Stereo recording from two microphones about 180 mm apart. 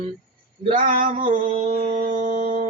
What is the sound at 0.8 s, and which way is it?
Male singing, 50° right (ahead or behind).